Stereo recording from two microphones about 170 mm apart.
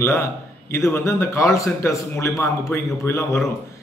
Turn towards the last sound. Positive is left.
turn(degrees=15)  # may be behind; listen again after turning